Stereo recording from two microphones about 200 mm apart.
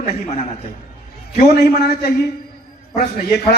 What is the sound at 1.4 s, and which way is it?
Speech, 55° left (ahead or behind).